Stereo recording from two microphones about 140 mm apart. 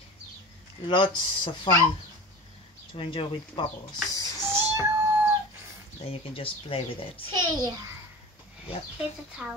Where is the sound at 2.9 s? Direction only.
35° left (ahead or behind).